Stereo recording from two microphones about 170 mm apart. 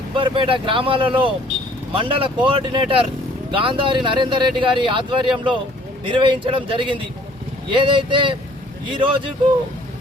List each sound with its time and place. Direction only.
0.1 s speech: 30° right (ahead or behind)